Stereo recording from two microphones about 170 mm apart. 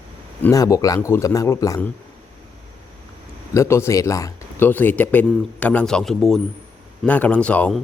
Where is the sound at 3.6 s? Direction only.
15° left (ahead or behind).